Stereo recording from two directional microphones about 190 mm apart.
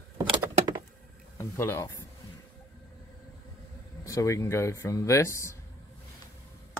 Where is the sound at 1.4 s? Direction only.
15° left (ahead or behind).